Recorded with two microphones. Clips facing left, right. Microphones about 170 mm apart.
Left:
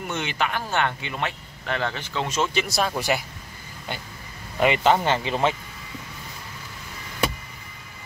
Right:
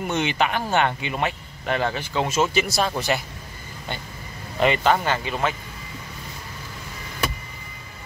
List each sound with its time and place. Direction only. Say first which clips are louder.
0.1 s speech: right 4 dB; 20° right (ahead or behind); by 3.0 s centre (ahead or behind)
4.6 s speech: even; 15° left (ahead or behind)